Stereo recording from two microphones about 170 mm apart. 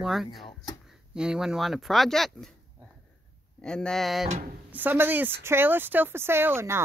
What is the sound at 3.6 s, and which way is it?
Speech, 5° left (ahead or behind).